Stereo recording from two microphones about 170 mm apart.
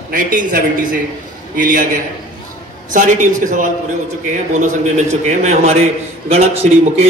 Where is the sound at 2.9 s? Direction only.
50° right (ahead or behind).